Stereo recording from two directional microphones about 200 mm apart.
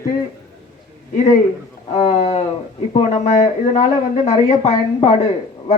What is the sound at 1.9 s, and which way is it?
A man's voice, 35° left (ahead or behind).